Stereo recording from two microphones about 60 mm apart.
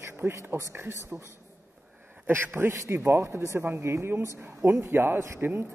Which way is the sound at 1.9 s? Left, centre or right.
Right.